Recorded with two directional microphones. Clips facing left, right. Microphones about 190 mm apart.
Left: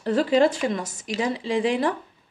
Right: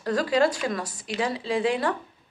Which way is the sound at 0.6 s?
20° left (ahead or behind).